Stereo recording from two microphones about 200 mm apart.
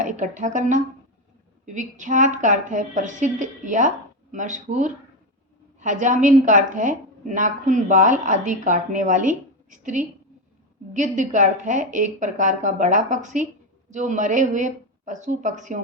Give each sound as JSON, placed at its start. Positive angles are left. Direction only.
{"t": 0.0, "sound": "a woman's voice", "side_deg": -40}